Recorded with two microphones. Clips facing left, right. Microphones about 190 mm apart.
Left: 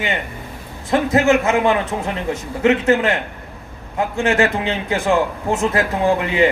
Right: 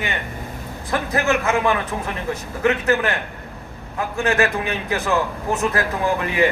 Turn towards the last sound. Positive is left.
turn(degrees=25)  # may be behind; listen again after turning